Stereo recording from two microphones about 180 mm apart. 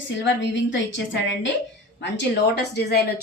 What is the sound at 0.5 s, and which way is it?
A woman's voice, 90° left.